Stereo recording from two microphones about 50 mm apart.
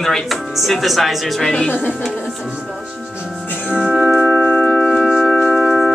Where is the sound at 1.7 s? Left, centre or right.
Left.